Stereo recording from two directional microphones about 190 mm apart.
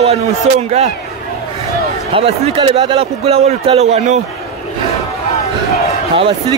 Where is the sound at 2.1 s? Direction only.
25° right (ahead or behind).